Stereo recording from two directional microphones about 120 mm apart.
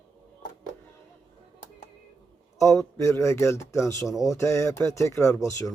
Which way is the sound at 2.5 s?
25° left (ahead or behind).